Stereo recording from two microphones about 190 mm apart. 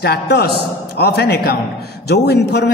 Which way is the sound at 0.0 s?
60° left (ahead or behind).